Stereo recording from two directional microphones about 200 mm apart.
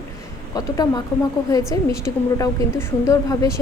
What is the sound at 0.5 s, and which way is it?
A woman's voice, 20° left (ahead or behind).